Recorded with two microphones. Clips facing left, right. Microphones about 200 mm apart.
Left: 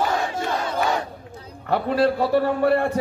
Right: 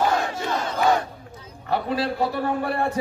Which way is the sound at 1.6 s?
50° left (ahead or behind).